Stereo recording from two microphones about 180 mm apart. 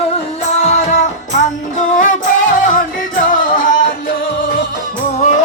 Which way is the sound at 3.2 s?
50° left (ahead or behind).